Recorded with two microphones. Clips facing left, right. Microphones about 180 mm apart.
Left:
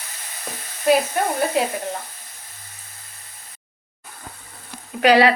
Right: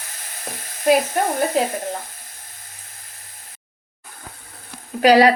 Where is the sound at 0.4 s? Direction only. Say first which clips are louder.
Right 1 dB; 45° right (ahead or behind).